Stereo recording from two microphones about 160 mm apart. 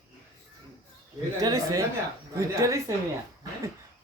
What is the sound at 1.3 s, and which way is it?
Speech, 20° right (ahead or behind).